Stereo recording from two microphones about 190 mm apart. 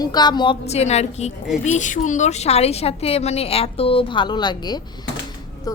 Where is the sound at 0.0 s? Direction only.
20° left (ahead or behind).